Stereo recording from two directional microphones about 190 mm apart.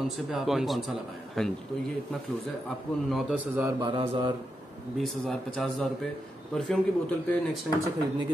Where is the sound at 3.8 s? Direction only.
30° right (ahead or behind).